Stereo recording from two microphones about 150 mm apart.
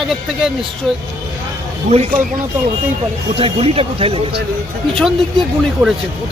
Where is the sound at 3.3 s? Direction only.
40° right (ahead or behind).